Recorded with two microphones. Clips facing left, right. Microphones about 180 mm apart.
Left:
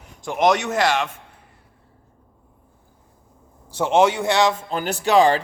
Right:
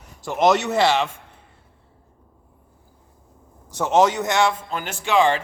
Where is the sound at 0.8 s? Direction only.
10° left (ahead or behind).